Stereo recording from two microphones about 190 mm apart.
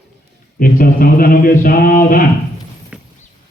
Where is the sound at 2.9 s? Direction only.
5° right (ahead or behind).